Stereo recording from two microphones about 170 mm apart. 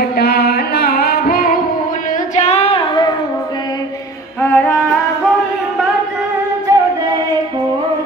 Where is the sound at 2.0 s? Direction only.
45° left (ahead or behind); by 3.2 s 25° left (ahead or behind).